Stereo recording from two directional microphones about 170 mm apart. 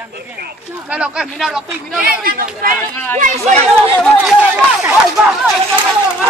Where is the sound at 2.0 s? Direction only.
60° right (ahead or behind).